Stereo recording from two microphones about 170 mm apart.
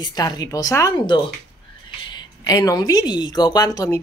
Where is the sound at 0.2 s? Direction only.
20° left (ahead or behind).